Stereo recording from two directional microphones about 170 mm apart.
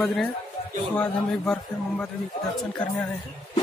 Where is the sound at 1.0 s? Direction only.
5° left (ahead or behind).